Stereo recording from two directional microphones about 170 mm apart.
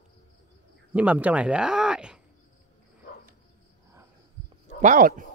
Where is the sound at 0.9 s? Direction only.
10° right (ahead or behind).